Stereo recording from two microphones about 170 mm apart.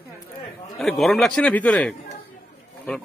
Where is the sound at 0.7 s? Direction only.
Centre (ahead or behind).